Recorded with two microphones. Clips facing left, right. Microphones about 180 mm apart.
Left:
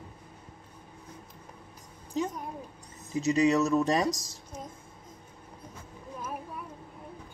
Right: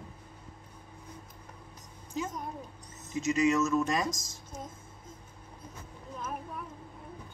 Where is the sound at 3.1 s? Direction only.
35° left (ahead or behind).